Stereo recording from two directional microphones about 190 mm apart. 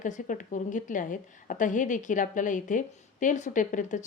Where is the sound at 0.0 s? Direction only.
40° left (ahead or behind).